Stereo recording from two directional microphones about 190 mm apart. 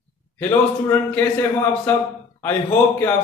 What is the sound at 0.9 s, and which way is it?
Speech, 10° left (ahead or behind).